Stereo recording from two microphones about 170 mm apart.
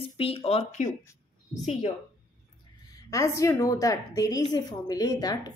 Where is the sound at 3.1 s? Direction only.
20° left (ahead or behind).